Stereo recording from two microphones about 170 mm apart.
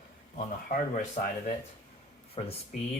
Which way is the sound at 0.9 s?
45° left (ahead or behind).